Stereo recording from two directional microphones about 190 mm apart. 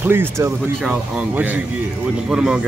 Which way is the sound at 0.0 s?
10° right (ahead or behind).